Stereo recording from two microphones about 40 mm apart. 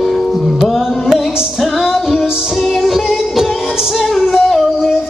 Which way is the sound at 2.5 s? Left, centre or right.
Centre.